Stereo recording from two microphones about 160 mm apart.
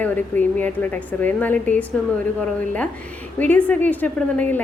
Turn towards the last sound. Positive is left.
turn(degrees=10)  # may be behind; listen again after turning